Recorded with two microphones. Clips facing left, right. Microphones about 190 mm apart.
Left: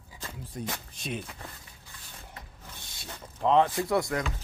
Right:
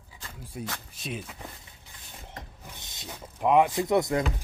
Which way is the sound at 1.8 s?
20° right (ahead or behind).